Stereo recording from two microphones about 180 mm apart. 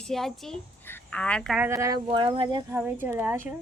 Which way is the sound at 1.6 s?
15° right (ahead or behind).